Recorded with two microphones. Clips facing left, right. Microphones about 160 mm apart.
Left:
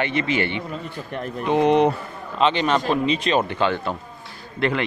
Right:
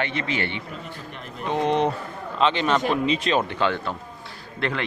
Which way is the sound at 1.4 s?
15° left (ahead or behind).